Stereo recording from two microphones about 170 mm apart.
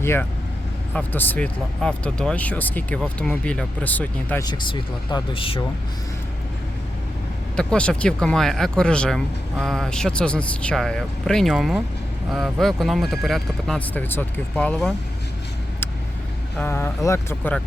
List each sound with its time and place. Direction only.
0.0 s speech: 15° left (ahead or behind)
4.4 s speech: 25° left (ahead or behind)
7.5 s speech: 5° left (ahead or behind)
16.6 s speech: 15° left (ahead or behind)